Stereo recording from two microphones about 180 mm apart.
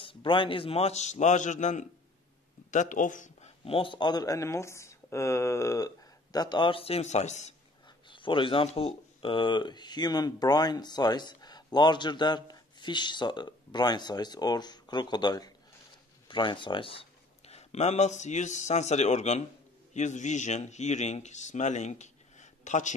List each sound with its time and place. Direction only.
0.0 s speech: 30° left (ahead or behind)
8.1 s a man's voice: 30° left (ahead or behind)